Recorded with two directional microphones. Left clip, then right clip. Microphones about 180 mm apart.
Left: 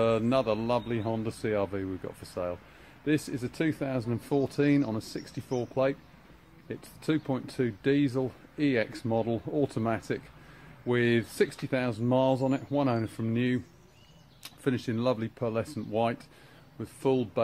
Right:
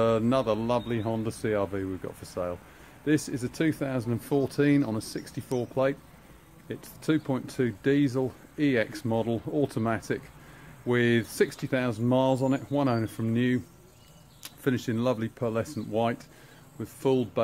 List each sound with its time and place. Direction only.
0.0 s speech: 20° left (ahead or behind)